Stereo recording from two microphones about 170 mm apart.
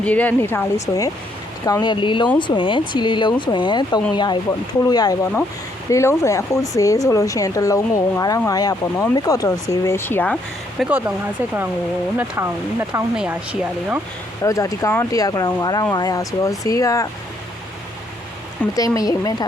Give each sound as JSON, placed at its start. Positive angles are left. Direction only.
{"t": 0.0, "sound": "speech", "side_deg": 10}
{"t": 10.8, "sound": "speech", "side_deg": -10}
{"t": 12.1, "sound": "speech", "side_deg": -10}
{"t": 14.4, "sound": "speech", "side_deg": 20}
{"t": 18.8, "sound": "speech", "side_deg": 20}